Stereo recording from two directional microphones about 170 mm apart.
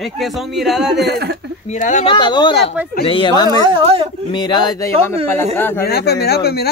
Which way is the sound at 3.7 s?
35° right (ahead or behind).